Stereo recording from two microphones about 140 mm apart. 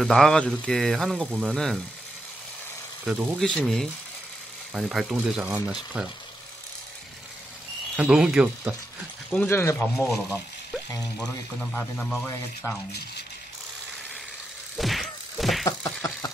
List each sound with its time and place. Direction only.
0.0 s speech: 5° left (ahead or behind)
3.1 s speech: centre (ahead or behind)
7.9 s speech: 5° right (ahead or behind)
9.3 s speech: 10° left (ahead or behind)
11.1 s speech: 10° left (ahead or behind)
14.8 s whack: centre (ahead or behind)
15.6 s a sound: 25° left (ahead or behind)